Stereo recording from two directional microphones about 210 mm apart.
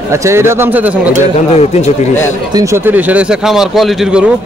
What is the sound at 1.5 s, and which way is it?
Speech, 30° left (ahead or behind).